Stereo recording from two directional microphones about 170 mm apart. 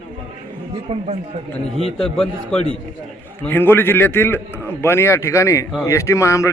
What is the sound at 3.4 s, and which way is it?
Speech, 10° left (ahead or behind).